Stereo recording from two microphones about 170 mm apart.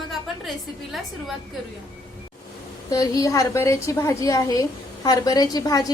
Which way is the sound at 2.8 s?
20° left (ahead or behind).